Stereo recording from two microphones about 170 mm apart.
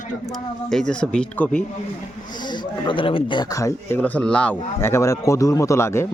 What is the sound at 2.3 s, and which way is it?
Speech, 25° left (ahead or behind).